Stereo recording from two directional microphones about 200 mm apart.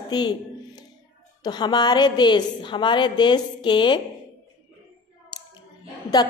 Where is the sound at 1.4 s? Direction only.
20° left (ahead or behind).